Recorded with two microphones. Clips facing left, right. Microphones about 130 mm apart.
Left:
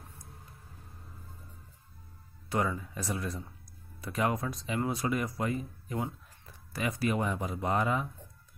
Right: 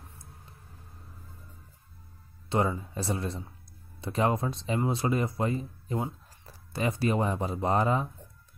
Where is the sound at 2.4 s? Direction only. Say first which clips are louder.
Right 3 dB; 25° right (ahead or behind).